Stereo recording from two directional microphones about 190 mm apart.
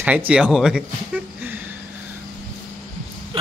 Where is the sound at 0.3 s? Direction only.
5° right (ahead or behind).